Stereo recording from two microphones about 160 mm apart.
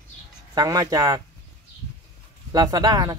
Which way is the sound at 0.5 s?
20° right (ahead or behind).